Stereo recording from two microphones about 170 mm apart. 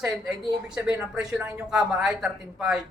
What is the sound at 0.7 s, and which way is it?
A woman's voice, 5° right (ahead or behind).